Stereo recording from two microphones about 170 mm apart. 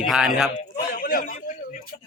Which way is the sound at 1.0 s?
55° left (ahead or behind).